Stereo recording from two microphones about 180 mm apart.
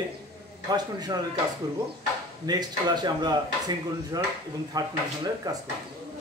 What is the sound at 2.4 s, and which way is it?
Speech, 20° right (ahead or behind).